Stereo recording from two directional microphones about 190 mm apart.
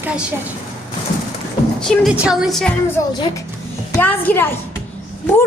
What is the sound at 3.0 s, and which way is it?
A woman's voice, 15° left (ahead or behind).